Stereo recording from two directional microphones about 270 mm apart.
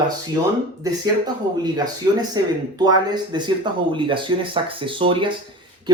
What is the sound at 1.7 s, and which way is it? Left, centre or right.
Speech, centre.